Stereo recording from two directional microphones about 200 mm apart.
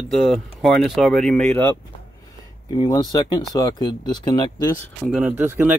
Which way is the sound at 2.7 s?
20° left (ahead or behind).